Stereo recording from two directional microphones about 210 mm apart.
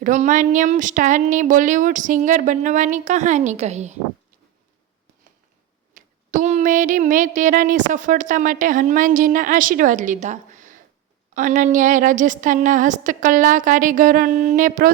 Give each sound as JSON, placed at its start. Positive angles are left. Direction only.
{"t": 0.0, "sound": "speech", "side_deg": -35}
{"t": 5.9, "sound": "a sound", "side_deg": -35}
{"t": 7.9, "sound": "speech", "side_deg": -35}